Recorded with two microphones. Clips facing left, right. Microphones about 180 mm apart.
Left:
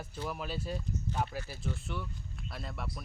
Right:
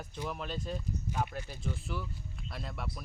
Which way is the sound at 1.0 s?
10° right (ahead or behind).